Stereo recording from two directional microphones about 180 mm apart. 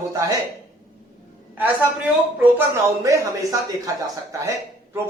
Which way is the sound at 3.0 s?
15° right (ahead or behind).